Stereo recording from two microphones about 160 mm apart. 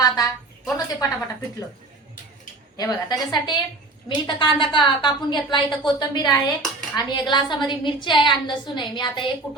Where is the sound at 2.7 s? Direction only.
25° left (ahead or behind).